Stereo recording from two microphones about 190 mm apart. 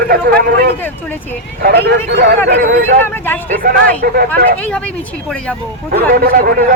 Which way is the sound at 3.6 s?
50° right (ahead or behind).